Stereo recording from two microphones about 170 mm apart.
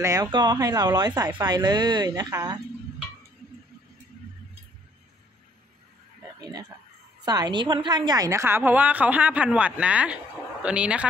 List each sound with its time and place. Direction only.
0.0 s speech: 20° right (ahead or behind)
7.2 s a woman's voice: 25° right (ahead or behind); by 11.1 s 5° right (ahead or behind)